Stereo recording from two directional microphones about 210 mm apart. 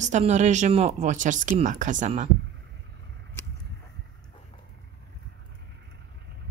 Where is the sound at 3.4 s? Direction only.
10° left (ahead or behind).